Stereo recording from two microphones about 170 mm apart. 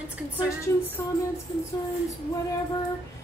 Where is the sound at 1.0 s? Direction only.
15° left (ahead or behind).